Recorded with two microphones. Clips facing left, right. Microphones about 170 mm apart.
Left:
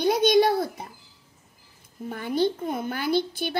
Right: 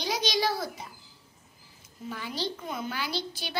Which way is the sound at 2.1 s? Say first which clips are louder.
Left 10 dB; 55° left (ahead or behind).